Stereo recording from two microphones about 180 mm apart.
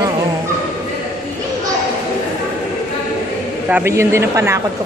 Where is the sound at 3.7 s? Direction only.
10° right (ahead or behind).